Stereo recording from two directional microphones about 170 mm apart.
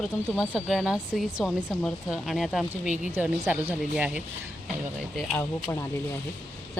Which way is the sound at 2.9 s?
45° left (ahead or behind).